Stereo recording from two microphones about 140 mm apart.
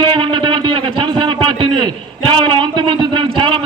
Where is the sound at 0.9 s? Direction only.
35° right (ahead or behind).